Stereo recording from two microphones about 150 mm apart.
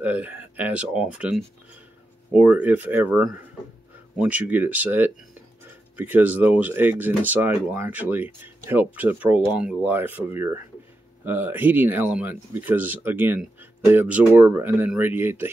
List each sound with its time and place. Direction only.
0.0 s speech: 10° right (ahead or behind)